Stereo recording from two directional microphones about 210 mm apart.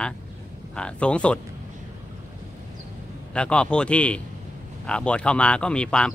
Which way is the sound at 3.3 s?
5° left (ahead or behind).